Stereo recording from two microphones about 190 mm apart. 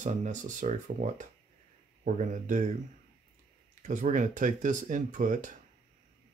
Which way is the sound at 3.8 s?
45° right (ahead or behind).